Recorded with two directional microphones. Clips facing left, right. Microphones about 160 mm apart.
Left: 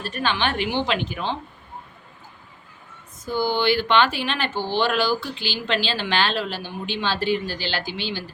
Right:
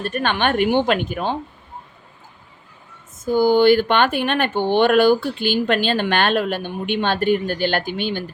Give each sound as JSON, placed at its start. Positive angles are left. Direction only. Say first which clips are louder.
{"t": 0.0, "sound": "speech", "louder": "right 4 dB", "side_deg": -55}
{"t": 3.2, "sound": "speech", "louder": "right 8 dB", "side_deg": -50}